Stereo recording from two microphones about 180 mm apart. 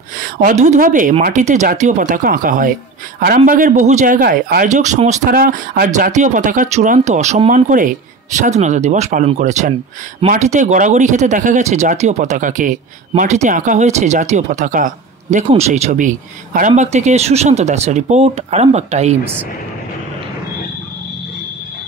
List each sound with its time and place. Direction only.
0.2 s a man's voice: 50° right (ahead or behind)